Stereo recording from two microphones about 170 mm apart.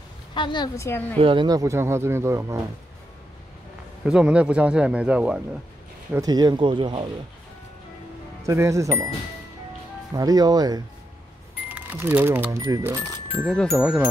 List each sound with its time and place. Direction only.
0.3 s a woman's voice: 25° left (ahead or behind)
1.2 s speech: 30° right (ahead or behind)
4.0 s speech: 5° right (ahead or behind)
6.1 s speech: 25° right (ahead or behind)
8.5 s speech: 15° right (ahead or behind)
10.1 s speech: 20° right (ahead or behind)
11.7 s speech: 10° right (ahead or behind)
13.5 s speech: centre (ahead or behind)